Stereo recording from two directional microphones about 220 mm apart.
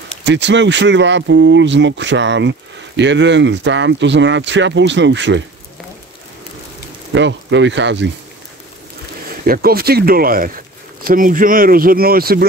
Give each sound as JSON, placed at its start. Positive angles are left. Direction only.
{"t": 0.2, "sound": "speech", "side_deg": -55}
{"t": 7.2, "sound": "speech", "side_deg": -55}
{"t": 9.5, "sound": "speech", "side_deg": -45}